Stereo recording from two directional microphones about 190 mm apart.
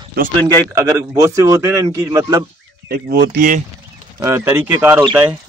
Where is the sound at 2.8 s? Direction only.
60° right (ahead or behind).